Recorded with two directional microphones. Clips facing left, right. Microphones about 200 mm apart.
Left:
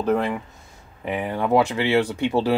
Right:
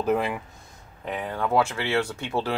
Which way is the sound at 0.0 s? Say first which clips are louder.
Left 3 dB; 5° right (ahead or behind).